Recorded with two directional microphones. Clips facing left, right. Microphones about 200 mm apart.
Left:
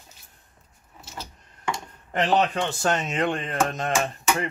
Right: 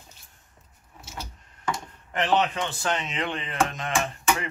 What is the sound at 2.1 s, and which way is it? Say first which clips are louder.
Speech: left 2 dB; 40° left (ahead or behind).